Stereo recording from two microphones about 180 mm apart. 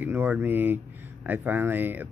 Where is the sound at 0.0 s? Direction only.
10° right (ahead or behind).